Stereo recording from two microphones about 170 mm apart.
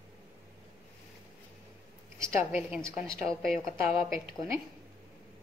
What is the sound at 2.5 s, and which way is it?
Speech, 5° right (ahead or behind).